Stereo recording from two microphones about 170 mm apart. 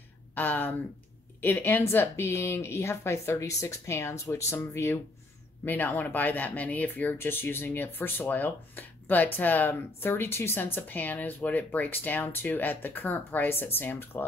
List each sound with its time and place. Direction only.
0.4 s speech: 10° left (ahead or behind)